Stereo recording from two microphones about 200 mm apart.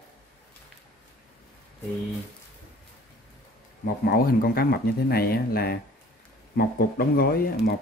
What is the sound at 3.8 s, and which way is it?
Speech, 50° left (ahead or behind).